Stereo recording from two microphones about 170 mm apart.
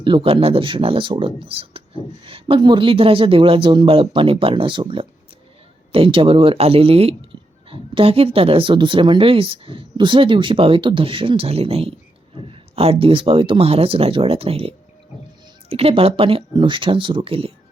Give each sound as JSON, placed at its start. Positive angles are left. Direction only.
{"t": 0.0, "sound": "speech", "side_deg": -30}